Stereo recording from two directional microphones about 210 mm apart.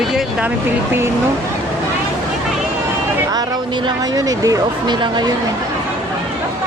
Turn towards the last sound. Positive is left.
turn(degrees=-20)  # may be behind; listen again after turning